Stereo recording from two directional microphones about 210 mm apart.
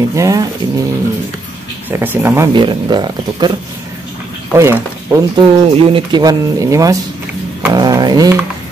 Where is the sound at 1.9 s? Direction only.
10° right (ahead or behind).